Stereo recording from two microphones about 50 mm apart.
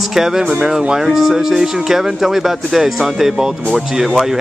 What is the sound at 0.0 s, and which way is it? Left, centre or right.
Speech, centre.